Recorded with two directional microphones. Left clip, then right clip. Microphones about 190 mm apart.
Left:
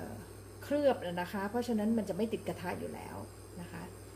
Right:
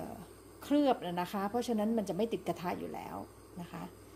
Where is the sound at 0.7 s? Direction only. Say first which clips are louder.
Even; 40° right (ahead or behind).